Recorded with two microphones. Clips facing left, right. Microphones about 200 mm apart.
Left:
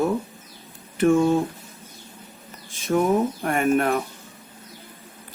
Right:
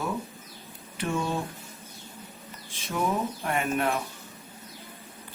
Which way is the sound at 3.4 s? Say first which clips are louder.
Left 7 dB; 50° left (ahead or behind).